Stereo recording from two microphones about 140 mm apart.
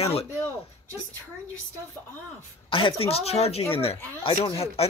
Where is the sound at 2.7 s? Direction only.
40° left (ahead or behind).